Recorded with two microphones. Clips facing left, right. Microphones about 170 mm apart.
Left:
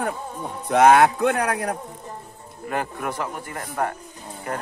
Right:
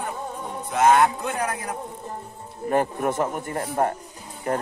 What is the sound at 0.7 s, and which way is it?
A man's voice, 65° left (ahead or behind).